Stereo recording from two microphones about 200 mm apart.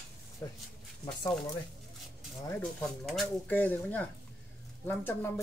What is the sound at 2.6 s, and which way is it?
Speech, centre (ahead or behind).